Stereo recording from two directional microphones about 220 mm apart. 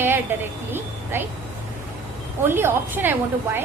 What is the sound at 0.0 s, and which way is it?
A woman's voice, 10° right (ahead or behind).